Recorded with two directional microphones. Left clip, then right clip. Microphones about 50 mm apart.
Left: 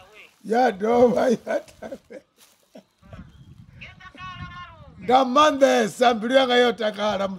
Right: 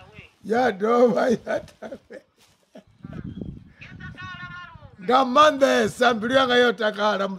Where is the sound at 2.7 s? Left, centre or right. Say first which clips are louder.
Even; right.